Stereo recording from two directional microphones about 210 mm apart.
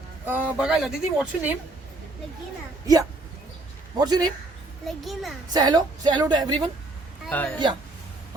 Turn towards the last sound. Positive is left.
turn(degrees=10)  # may be behind; listen again after turning